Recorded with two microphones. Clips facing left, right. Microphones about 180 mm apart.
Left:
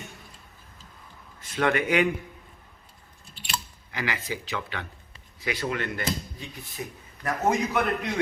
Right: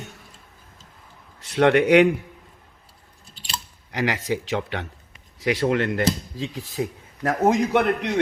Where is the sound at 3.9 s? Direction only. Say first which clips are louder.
Right 7 dB; 70° right (ahead or behind); by 7.3 s 90° right.